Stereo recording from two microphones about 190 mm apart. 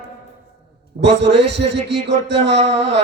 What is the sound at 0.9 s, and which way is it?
Speech, 65° right (ahead or behind).